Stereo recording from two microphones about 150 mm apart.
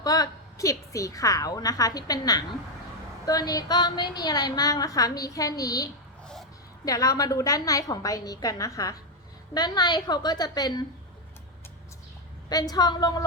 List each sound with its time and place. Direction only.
0.0 s a woman's voice: 25° left (ahead or behind)
12.5 s a woman's voice: 25° left (ahead or behind)